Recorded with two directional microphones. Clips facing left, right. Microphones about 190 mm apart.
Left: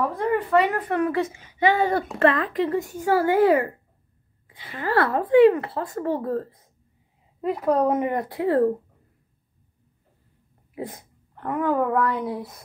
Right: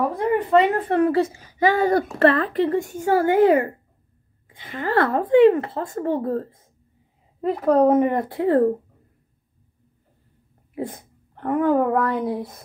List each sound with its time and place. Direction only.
0.2 s a woman's voice: 20° right (ahead or behind)
4.5 s a sound: 45° right (ahead or behind)
4.8 s speech: 50° right (ahead or behind)
5.1 s speech: 25° right (ahead or behind)
7.6 s speech: 25° right (ahead or behind)
10.7 s speech: 25° right (ahead or behind)